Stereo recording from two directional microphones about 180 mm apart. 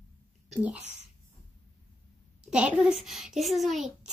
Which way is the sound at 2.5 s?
5° right (ahead or behind).